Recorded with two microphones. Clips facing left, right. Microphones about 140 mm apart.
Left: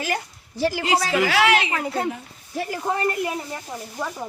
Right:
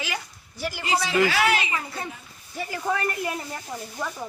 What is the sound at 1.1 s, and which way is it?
A woman's voice, 75° left (ahead or behind).